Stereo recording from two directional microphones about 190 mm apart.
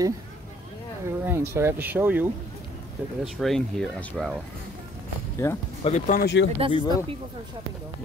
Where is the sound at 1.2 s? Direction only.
15° right (ahead or behind).